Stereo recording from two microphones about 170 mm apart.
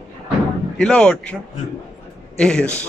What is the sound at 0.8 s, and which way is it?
Speech, 5° left (ahead or behind).